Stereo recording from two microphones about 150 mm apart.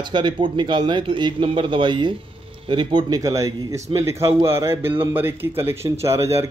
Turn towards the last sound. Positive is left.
turn(degrees=-20)  # may be behind; listen again after turning